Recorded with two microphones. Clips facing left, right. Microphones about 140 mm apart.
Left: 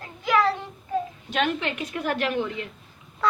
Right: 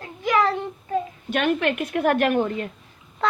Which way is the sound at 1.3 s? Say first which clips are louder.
Right 4 dB; 55° right (ahead or behind).